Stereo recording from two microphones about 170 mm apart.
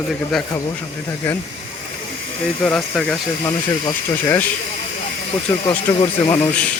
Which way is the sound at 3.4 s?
20° left (ahead or behind).